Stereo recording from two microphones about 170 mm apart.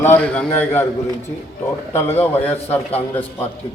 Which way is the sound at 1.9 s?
10° left (ahead or behind).